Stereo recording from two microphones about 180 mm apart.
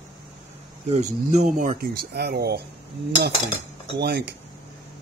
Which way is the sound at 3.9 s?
65° right (ahead or behind).